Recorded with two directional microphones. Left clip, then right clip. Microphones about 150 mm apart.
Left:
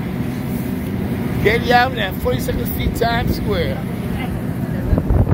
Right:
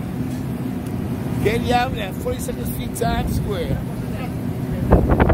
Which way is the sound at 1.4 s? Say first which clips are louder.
Left 5 dB; 20° right (ahead or behind).